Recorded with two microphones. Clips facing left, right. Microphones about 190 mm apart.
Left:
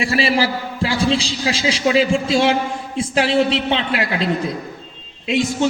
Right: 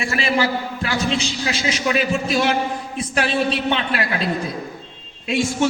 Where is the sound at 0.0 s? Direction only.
35° left (ahead or behind).